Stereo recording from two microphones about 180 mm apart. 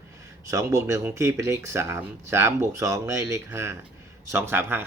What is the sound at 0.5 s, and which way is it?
Speech, 20° right (ahead or behind).